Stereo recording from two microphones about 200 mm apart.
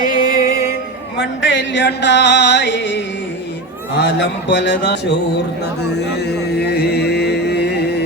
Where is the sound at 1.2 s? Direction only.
65° left (ahead or behind).